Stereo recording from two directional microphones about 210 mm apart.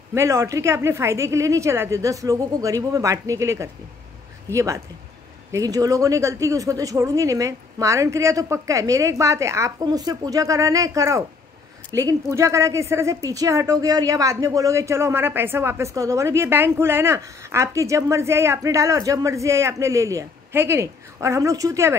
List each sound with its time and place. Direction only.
0.1 s a woman's voice: 15° right (ahead or behind)